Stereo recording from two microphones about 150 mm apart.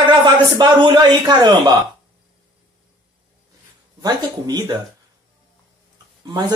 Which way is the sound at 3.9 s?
25° right (ahead or behind).